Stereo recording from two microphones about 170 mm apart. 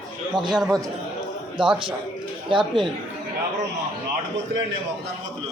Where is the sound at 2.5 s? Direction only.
30° right (ahead or behind).